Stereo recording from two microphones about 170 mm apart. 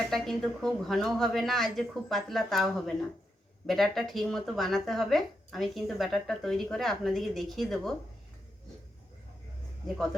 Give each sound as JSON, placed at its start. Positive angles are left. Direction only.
{"t": 0.1, "sound": "speech", "side_deg": 0}